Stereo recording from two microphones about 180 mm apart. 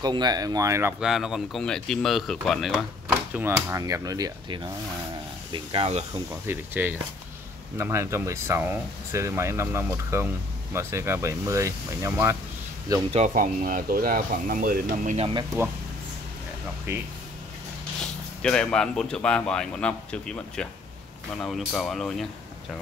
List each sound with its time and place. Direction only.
0.0 s speech: 25° right (ahead or behind)
1.0 s speech: centre (ahead or behind)
3.3 s speech: 10° right (ahead or behind); by 6.2 s 35° right (ahead or behind)
6.4 s speech: 10° right (ahead or behind)
13.1 s speech: 45° right (ahead or behind)
15.1 s speech: 30° right (ahead or behind)
16.9 s speech: 15° right (ahead or behind)
18.4 s speech: 5° left (ahead or behind)